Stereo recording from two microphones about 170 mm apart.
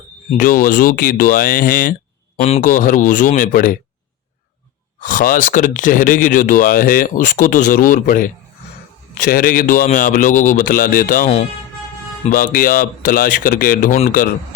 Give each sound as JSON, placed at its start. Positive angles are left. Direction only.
{"t": 0.3, "sound": "speech", "side_deg": 55}
{"t": 4.9, "sound": "speech", "side_deg": 50}
{"t": 12.3, "sound": "speech", "side_deg": 55}